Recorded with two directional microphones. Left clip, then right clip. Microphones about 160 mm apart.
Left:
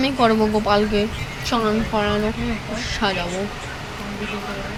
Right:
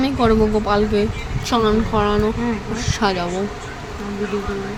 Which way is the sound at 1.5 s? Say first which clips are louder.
Right 3 dB; 20° right (ahead or behind).